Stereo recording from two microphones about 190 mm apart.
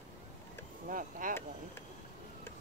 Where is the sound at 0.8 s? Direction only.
45° right (ahead or behind).